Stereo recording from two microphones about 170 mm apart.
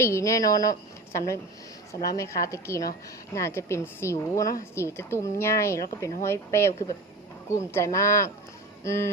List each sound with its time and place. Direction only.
0.0 s a woman's voice: 15° left (ahead or behind)